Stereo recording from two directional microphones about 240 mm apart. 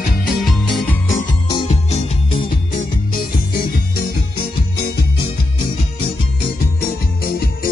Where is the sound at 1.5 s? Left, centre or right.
Left.